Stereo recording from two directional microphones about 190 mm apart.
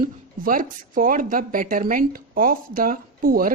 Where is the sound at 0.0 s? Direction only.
45° right (ahead or behind).